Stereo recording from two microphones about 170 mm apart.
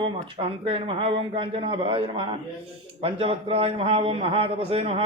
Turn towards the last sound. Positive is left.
turn(degrees=-35)  # may be behind; listen again after turning